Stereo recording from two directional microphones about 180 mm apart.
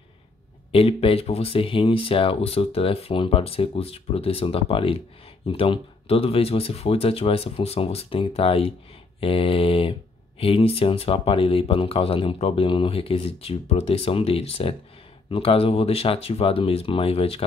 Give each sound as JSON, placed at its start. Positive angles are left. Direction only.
{"t": 0.7, "sound": "speech", "side_deg": 30}